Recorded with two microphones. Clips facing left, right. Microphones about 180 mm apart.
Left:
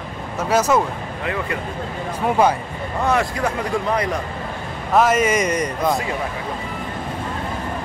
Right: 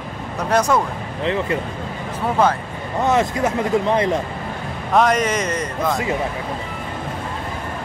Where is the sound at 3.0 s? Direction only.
20° right (ahead or behind).